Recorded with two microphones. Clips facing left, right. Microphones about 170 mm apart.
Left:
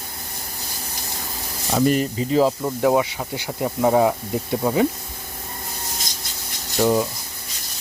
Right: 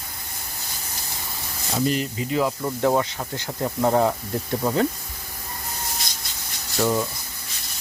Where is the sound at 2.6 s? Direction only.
5° left (ahead or behind).